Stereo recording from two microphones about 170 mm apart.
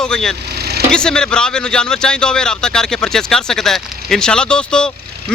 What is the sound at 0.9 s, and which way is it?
Speech, 5° left (ahead or behind).